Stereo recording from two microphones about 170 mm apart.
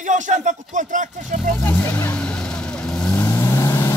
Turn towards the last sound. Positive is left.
turn(degrees=15)  # may be behind; listen again after turning